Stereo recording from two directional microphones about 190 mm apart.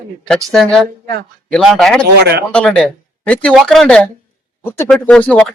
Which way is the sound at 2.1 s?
60° right (ahead or behind).